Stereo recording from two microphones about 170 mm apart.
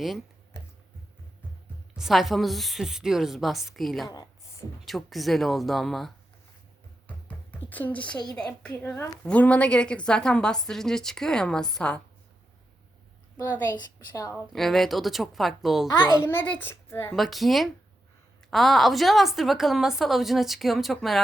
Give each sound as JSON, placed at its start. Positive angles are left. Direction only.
{"t": 2.0, "sound": "a woman's voice", "side_deg": 0}
{"t": 4.0, "sound": "a child's voice", "side_deg": 25}
{"t": 4.9, "sound": "a woman's voice", "side_deg": 0}
{"t": 7.3, "sound": "a sound", "side_deg": 10}
{"t": 8.1, "sound": "a child's voice", "side_deg": 25}
{"t": 8.4, "sound": "a woman's voice", "side_deg": 10}
{"t": 13.4, "sound": "a woman's voice", "side_deg": 10}
{"t": 14.5, "sound": "a woman's voice", "side_deg": 0}
{"t": 15.9, "sound": "a child's voice", "side_deg": 25}
{"t": 16.3, "sound": "a woman's voice", "side_deg": 10}
{"t": 17.2, "sound": "a woman's voice", "side_deg": 0}